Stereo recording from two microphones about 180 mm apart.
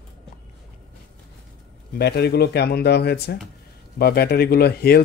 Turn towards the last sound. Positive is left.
turn(degrees=60)  # may be behind; listen again after turning